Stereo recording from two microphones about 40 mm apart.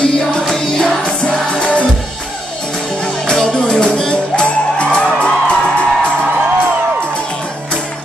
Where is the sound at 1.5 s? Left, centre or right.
Left.